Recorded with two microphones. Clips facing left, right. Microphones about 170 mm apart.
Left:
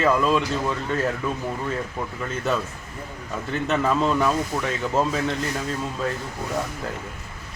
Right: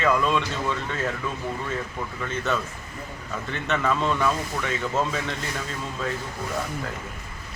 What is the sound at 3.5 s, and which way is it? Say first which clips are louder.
A man's voice: left 3 dB; 30° left (ahead or behind).